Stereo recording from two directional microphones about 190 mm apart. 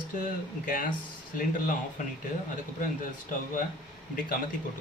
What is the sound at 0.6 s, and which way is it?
Speech, 45° left (ahead or behind).